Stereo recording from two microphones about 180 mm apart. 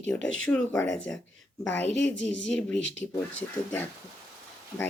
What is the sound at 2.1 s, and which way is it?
Speech, 90° left.